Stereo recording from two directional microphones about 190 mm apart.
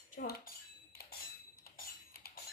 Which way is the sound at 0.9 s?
55° left (ahead or behind).